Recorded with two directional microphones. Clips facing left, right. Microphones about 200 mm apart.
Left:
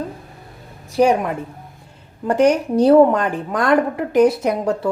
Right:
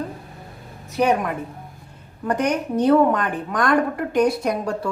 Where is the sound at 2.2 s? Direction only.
30° left (ahead or behind).